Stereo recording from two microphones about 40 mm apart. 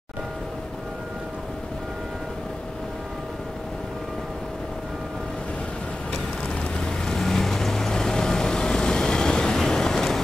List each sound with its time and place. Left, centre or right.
6.8 s vehicle: centre